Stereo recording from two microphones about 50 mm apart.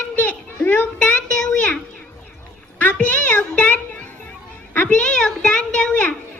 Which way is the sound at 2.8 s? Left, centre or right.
Left.